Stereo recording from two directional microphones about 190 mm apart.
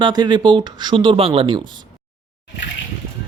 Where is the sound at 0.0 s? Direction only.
25° right (ahead or behind).